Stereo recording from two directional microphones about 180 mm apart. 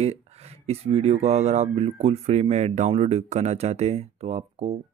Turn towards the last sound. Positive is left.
turn(degrees=-35)  # may be behind; listen again after turning